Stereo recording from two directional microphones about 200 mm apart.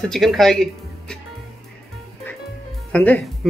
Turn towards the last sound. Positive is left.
turn(degrees=5)  # may be behind; listen again after turning